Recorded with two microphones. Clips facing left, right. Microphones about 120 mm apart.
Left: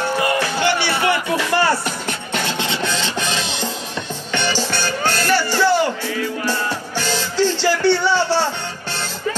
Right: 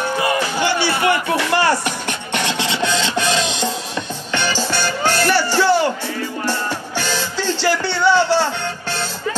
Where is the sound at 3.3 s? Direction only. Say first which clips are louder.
Right 4 dB; 15° right (ahead or behind).